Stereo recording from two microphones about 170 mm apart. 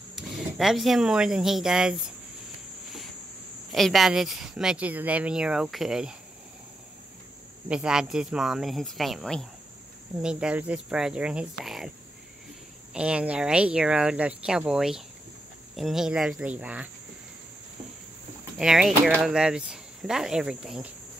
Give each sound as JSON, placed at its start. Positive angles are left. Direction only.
{"t": 0.1, "sound": "speech", "side_deg": 0}
{"t": 3.7, "sound": "speech", "side_deg": 0}
{"t": 7.6, "sound": "speech", "side_deg": -5}
{"t": 12.9, "sound": "speech", "side_deg": -5}
{"t": 18.6, "sound": "speech", "side_deg": -5}